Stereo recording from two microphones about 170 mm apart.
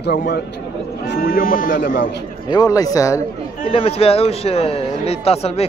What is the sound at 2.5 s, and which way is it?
Speech, 20° left (ahead or behind).